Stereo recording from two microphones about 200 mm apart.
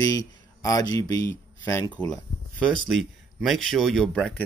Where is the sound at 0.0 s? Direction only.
20° left (ahead or behind).